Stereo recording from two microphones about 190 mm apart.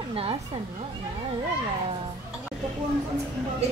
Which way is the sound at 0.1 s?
30° right (ahead or behind).